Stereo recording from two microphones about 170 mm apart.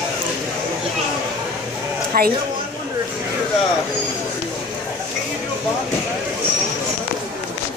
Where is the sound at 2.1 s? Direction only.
60° right (ahead or behind).